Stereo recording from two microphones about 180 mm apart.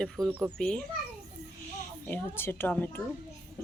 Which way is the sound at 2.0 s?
10° left (ahead or behind).